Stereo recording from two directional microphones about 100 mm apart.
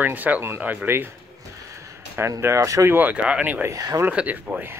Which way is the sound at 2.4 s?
30° right (ahead or behind).